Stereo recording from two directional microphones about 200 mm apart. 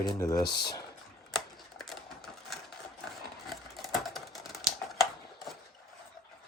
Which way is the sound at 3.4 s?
Centre (ahead or behind).